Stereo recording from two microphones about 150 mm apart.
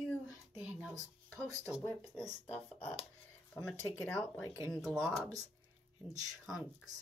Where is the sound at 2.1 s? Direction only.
15° left (ahead or behind).